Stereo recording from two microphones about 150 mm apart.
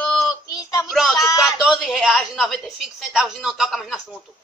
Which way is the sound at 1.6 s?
Centre (ahead or behind).